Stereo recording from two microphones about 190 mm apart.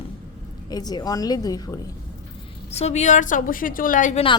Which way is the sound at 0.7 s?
20° left (ahead or behind).